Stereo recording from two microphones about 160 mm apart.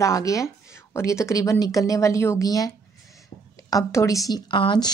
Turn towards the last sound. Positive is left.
turn(degrees=30)  # may be behind; listen again after turning